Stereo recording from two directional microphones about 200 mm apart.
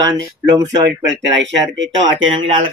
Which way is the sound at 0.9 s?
60° right (ahead or behind).